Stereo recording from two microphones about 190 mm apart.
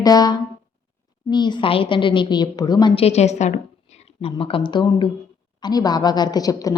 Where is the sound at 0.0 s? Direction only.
20° left (ahead or behind).